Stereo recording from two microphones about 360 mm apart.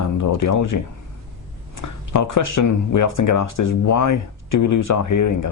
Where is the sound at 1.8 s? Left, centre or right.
Left.